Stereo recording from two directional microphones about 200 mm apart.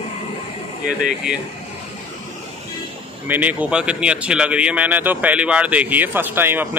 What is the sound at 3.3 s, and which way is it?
A man's voice, 10° right (ahead or behind).